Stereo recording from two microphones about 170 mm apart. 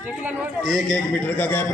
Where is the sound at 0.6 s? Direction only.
5° left (ahead or behind).